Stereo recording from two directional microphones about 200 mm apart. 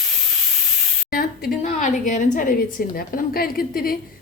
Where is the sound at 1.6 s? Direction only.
40° left (ahead or behind).